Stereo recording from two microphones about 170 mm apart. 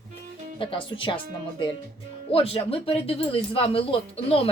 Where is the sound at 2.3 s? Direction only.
35° left (ahead or behind).